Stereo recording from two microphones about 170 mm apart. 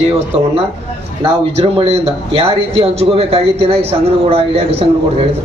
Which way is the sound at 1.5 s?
35° right (ahead or behind).